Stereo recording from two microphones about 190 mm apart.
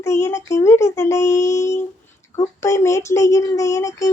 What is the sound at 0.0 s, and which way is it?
Speech, 15° left (ahead or behind).